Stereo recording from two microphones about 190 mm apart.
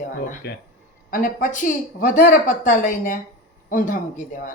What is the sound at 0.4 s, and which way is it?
Speech, 60° left (ahead or behind).